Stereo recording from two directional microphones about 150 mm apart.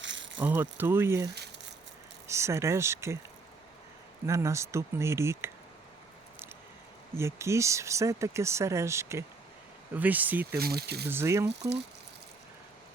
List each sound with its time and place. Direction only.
0.3 s speech: 10° right (ahead or behind)
4.3 s speech: 20° right (ahead or behind)
7.2 s speech: 20° right (ahead or behind)
10.6 s speech: 90° right
11.1 s speech: 20° right (ahead or behind)